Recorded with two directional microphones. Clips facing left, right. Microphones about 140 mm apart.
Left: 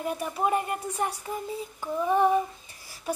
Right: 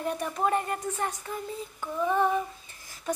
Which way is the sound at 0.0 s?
10° left (ahead or behind).